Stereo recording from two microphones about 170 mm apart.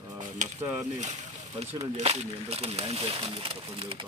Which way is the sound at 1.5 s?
40° right (ahead or behind).